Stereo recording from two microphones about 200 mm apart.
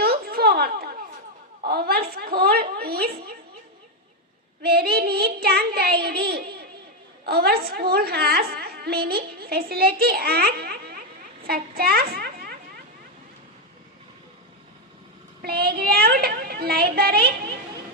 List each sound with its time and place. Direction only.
0.0 s a sound: 50° right (ahead or behind)
1.6 s a woman's voice: 50° right (ahead or behind)
4.6 s a woman's voice: 50° right (ahead or behind)
15.4 s a woman's voice: 50° right (ahead or behind)